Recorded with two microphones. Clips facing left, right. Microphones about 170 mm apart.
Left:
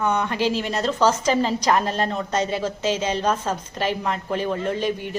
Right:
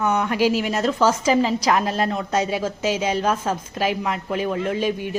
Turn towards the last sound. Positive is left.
turn(degrees=-10)  # may be behind; listen again after turning